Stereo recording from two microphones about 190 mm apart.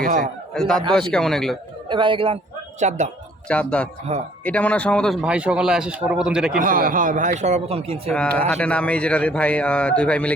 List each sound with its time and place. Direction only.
0.0 s speech: 45° right (ahead or behind)
0.5 s a man's voice: centre (ahead or behind)
1.9 s a man's voice: 25° right (ahead or behind)
3.5 s a man's voice: 5° left (ahead or behind)
4.1 s a man's voice: 35° right (ahead or behind)
4.4 s a man's voice: 5° left (ahead or behind)
6.6 s speech: 45° right (ahead or behind); by 8.1 s 30° right (ahead or behind)
8.1 s a man's voice: 5° left (ahead or behind)